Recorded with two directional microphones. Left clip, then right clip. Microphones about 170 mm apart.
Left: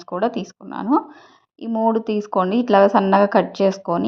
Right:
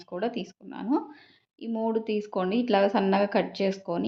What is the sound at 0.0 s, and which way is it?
Speech, 35° left (ahead or behind).